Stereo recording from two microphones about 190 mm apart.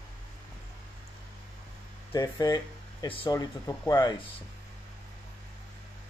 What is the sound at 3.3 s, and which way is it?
Speech, 15° left (ahead or behind).